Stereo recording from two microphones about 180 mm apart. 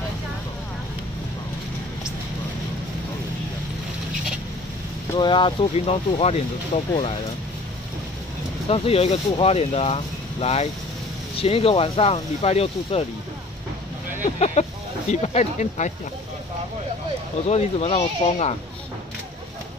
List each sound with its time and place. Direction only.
5.1 s speech: 25° left (ahead or behind)
8.6 s speech: 30° left (ahead or behind)
14.2 s speech: 40° left (ahead or behind)
17.5 s speech: 35° left (ahead or behind)